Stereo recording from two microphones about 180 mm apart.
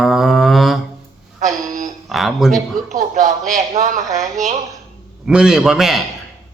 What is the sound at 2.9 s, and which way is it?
Music, 45° right (ahead or behind).